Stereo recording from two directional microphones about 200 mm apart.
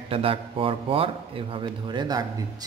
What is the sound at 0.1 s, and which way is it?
Speech, 30° right (ahead or behind).